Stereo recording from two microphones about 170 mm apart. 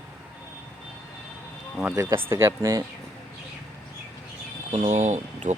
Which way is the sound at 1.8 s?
15° right (ahead or behind).